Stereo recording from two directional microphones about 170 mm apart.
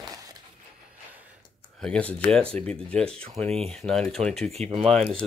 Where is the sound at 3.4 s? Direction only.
35° right (ahead or behind).